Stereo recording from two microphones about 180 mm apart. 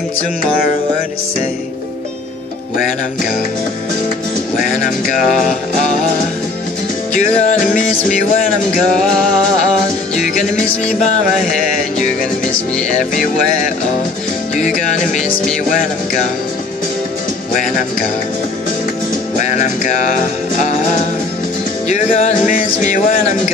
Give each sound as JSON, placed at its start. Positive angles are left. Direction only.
{"t": 7.2, "sound": "music", "side_deg": 40}
{"t": 12.9, "sound": "music", "side_deg": 45}
{"t": 14.6, "sound": "music", "side_deg": 40}
{"t": 19.3, "sound": "music", "side_deg": 40}
{"t": 21.8, "sound": "music", "side_deg": 40}